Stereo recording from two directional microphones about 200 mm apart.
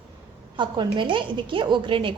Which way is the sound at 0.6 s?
25° right (ahead or behind).